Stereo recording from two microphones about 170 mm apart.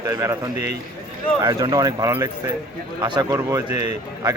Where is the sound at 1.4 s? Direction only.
20° right (ahead or behind).